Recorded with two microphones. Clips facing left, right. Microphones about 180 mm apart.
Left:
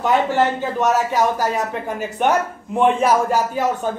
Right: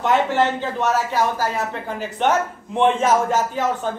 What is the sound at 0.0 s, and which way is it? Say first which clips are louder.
Speech: left 1 dB; 10° left (ahead or behind).